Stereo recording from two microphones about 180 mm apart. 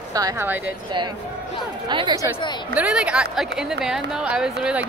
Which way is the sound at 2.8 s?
5° right (ahead or behind).